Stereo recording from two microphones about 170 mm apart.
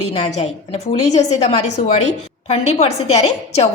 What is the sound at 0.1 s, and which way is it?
A woman's voice, 40° left (ahead or behind).